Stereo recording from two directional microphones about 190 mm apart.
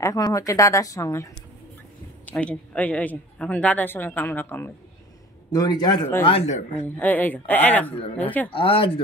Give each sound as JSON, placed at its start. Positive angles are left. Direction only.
{"t": 0.0, "sound": "speech", "side_deg": 15}
{"t": 2.2, "sound": "a man's voice", "side_deg": 5}
{"t": 6.2, "sound": "speech", "side_deg": 35}
{"t": 7.0, "sound": "speech", "side_deg": 10}
{"t": 8.5, "sound": "a man's voice", "side_deg": 30}